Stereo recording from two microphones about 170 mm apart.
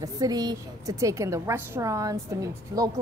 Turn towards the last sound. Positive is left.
turn(degrees=-20)  # may be behind; listen again after turning